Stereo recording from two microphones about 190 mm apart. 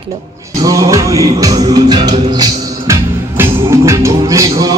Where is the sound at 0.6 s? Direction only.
15° right (ahead or behind).